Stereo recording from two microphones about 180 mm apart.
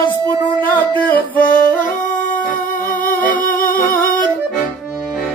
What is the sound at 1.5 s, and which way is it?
Music, 45° left (ahead or behind).